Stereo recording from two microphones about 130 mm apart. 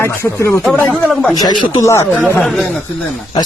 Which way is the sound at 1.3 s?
30° left (ahead or behind).